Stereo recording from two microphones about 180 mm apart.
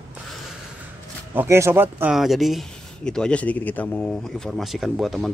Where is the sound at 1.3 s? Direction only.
10° right (ahead or behind).